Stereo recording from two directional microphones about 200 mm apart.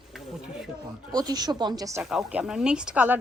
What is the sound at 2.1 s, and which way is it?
Speech, 5° right (ahead or behind).